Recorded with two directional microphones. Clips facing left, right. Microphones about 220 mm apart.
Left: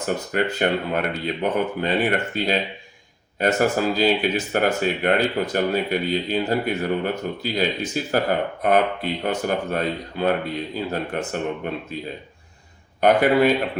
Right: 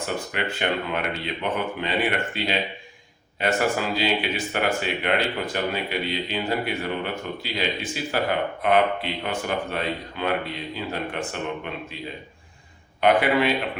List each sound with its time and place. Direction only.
0.3 s speech: 40° left (ahead or behind)
13.0 s speech: 45° left (ahead or behind)